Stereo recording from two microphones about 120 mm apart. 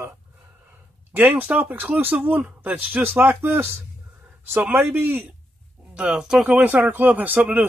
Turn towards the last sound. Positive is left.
turn(degrees=-15)  # may be behind; listen again after turning